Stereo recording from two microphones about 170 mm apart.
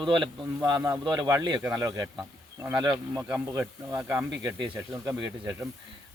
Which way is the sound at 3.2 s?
10° right (ahead or behind).